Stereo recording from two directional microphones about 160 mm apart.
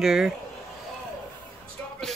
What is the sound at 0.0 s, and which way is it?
Speech, centre (ahead or behind).